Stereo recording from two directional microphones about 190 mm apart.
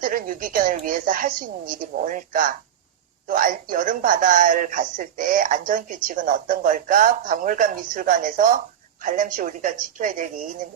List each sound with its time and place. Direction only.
0.0 s speech: 45° right (ahead or behind)